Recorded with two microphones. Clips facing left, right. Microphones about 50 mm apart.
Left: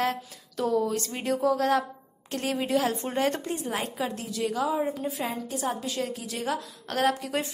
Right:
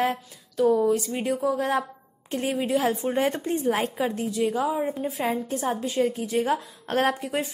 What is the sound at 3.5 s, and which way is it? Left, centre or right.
A woman's voice, right.